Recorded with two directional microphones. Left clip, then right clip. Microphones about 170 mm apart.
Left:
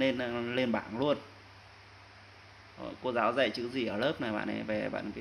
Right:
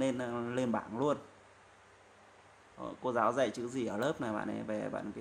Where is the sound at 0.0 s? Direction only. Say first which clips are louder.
Left 4 dB; 10° right (ahead or behind).